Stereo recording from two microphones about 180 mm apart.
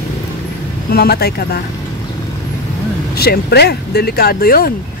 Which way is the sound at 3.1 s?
60° left (ahead or behind).